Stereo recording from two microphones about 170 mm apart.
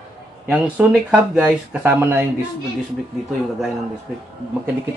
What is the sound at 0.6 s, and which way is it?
Speech, 10° right (ahead or behind).